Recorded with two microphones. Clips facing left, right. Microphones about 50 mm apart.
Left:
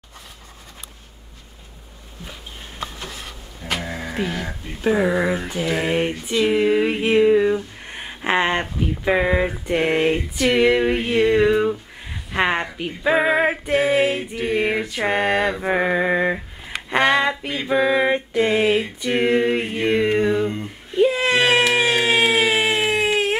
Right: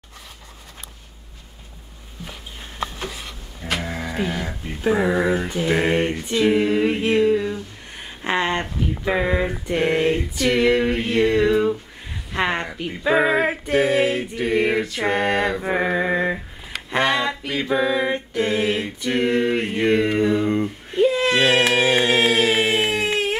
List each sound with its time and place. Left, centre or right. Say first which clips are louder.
3.7 s speech: even; centre
5.7 s speech: right 2 dB; centre
5.9 s a sound: even; centre